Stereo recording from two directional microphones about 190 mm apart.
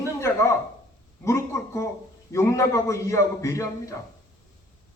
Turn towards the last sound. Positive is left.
turn(degrees=15)  # may be behind; listen again after turning